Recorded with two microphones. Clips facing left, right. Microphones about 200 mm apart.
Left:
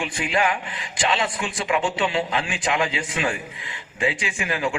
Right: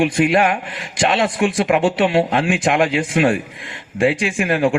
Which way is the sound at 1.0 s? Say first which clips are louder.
Right 8 dB; 70° right (ahead or behind).